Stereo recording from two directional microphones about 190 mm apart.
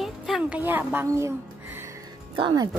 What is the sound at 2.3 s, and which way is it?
Speech, 25° right (ahead or behind).